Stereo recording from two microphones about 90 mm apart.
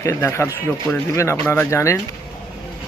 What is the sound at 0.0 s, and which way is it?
Speech, 30° left (ahead or behind).